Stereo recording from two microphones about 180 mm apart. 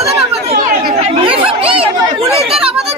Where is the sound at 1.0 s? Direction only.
30° right (ahead or behind).